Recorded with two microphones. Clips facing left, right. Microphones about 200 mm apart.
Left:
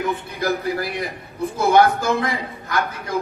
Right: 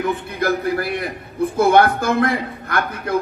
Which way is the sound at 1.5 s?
55° right (ahead or behind).